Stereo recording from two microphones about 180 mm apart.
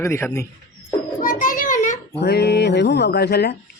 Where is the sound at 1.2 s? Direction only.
50° left (ahead or behind).